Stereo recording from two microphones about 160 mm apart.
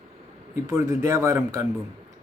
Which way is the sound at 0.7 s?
15° right (ahead or behind).